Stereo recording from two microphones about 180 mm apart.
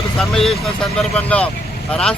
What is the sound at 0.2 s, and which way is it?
Speech, centre (ahead or behind).